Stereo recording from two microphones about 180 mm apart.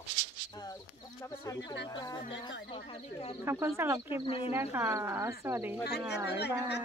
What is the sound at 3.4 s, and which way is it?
Speech, 15° right (ahead or behind).